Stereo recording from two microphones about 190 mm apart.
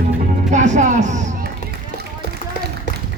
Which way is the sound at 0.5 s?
40° right (ahead or behind).